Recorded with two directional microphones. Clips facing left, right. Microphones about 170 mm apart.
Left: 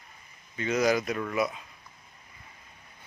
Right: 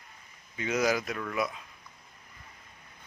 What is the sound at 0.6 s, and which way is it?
Speech, 5° right (ahead or behind).